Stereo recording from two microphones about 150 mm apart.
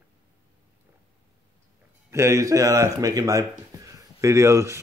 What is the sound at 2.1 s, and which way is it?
Speech, 20° right (ahead or behind).